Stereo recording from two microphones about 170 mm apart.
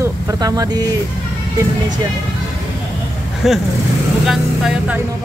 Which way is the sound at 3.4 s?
Centre (ahead or behind).